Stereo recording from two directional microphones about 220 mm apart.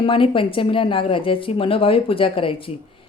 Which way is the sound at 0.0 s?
25° left (ahead or behind).